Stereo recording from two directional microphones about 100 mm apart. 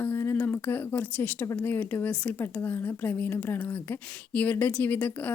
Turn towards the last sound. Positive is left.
turn(degrees=15)  # may be behind; listen again after turning